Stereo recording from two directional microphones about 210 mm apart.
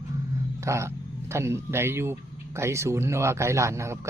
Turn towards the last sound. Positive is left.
turn(degrees=-15)  # may be behind; listen again after turning